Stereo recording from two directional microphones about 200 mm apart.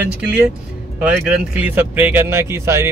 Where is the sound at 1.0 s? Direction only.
5° right (ahead or behind).